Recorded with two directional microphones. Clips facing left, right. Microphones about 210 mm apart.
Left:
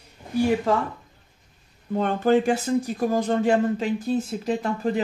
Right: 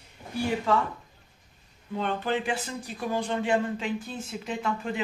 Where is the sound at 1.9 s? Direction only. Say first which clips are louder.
Left 8 dB; 45° left (ahead or behind).